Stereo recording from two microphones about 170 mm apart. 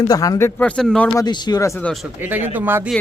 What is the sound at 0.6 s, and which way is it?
Speech, 5° left (ahead or behind).